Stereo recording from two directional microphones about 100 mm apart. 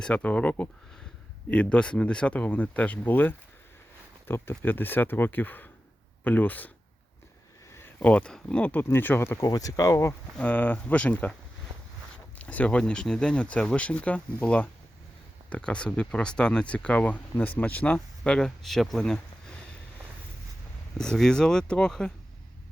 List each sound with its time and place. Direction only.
0.0 s speech: 15° left (ahead or behind)
7.7 s a sound: 25° left (ahead or behind)
8.0 s speech: 10° left (ahead or behind)
9.4 s speech: 35° left (ahead or behind)
10.3 s speech: 15° left (ahead or behind)
11.7 s a sound: 90° right
12.4 s speech: 15° left (ahead or behind)
21.0 s speech: 5° left (ahead or behind)